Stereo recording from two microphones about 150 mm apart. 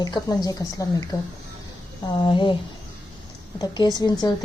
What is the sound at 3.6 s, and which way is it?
Speech, 25° left (ahead or behind).